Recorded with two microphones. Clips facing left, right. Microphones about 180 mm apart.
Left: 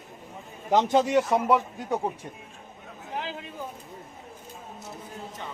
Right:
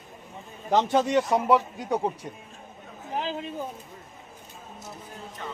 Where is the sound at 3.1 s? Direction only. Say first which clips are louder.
Right 4 dB; 25° right (ahead or behind).